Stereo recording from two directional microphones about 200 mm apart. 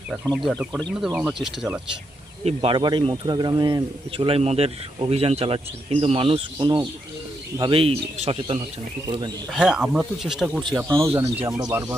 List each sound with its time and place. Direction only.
0.3 s speech: centre (ahead or behind)
2.4 s speech: 30° right (ahead or behind)
9.5 s speech: 5° right (ahead or behind)